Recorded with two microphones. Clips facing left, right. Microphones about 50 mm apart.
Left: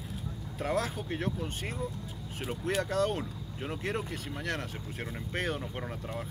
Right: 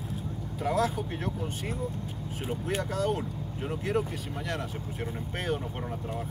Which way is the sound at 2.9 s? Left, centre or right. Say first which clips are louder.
Even; left.